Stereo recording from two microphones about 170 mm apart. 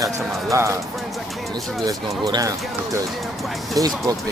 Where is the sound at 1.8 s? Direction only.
20° right (ahead or behind).